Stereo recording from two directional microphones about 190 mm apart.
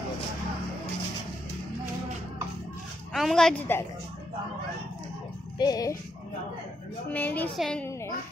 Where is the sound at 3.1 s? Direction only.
Centre (ahead or behind).